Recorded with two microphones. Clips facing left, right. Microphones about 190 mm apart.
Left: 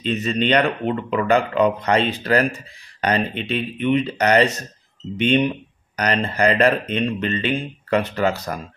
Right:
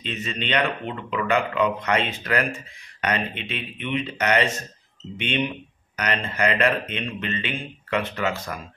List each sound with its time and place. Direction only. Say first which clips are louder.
0.0 s speech: left 9 dB; 40° left (ahead or behind)